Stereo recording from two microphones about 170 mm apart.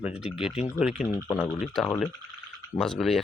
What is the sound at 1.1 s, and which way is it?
Speech, 20° left (ahead or behind).